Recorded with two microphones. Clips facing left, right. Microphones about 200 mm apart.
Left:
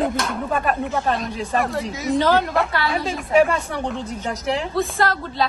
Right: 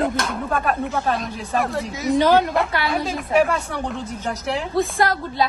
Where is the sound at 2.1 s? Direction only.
15° right (ahead or behind).